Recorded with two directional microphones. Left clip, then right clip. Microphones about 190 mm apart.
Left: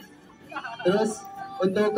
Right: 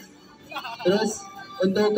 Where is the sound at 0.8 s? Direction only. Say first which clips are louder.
Right 1 dB; 5° left (ahead or behind).